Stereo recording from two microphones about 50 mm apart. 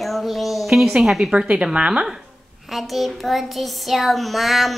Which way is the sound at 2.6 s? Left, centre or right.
Centre.